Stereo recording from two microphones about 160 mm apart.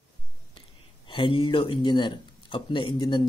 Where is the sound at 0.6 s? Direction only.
30° left (ahead or behind).